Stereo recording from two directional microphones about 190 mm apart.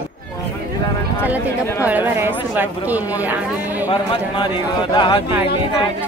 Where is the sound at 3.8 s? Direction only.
25° left (ahead or behind).